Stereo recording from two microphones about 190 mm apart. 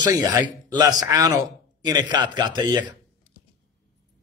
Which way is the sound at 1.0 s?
20° right (ahead or behind).